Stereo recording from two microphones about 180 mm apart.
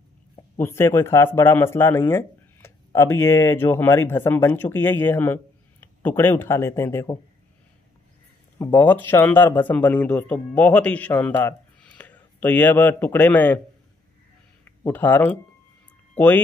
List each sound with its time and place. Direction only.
0.6 s speech: 15° left (ahead or behind)
8.5 s speech: 10° left (ahead or behind)
14.9 s speech: 10° left (ahead or behind)